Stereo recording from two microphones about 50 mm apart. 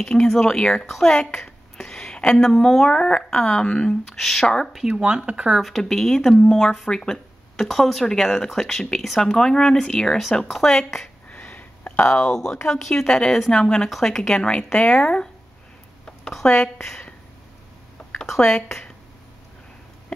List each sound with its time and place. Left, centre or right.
0.0 s speech: centre
1.0 s a sound: centre
2.3 s speech: centre
4.2 s speech: centre
5.0 s speech: right
5.5 s speech: centre
11.2 s a sound: left
12.2 s speech: centre
16.4 s speech: centre